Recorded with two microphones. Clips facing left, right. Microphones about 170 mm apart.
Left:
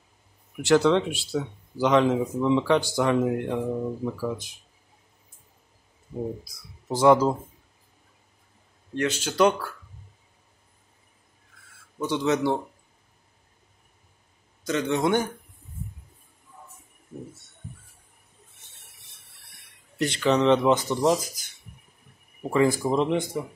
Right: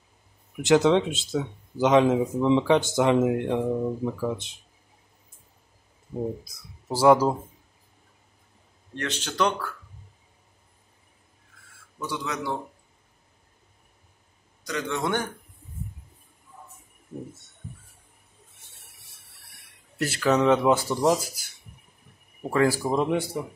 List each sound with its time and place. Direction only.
0.7 s speech: 20° right (ahead or behind)
6.9 s speech: 10° right (ahead or behind)
8.9 s speech: 10° left (ahead or behind)
12.1 s a man's voice: 25° left (ahead or behind)
14.7 s a man's voice: 25° left (ahead or behind)
20.0 s speech: 5° right (ahead or behind)